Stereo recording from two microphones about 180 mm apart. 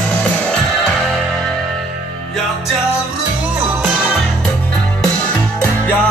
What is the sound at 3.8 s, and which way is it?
Music, 5° right (ahead or behind).